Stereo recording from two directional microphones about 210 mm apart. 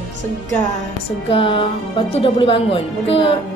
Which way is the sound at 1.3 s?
25° left (ahead or behind).